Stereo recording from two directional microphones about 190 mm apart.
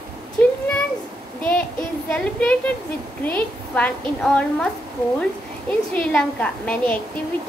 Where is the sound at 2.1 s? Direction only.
5° left (ahead or behind).